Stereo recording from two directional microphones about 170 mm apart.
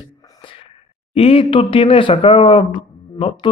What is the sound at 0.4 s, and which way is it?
Sneeze, 30° left (ahead or behind).